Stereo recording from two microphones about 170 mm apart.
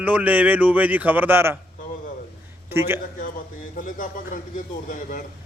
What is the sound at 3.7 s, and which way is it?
Speech, 50° left (ahead or behind).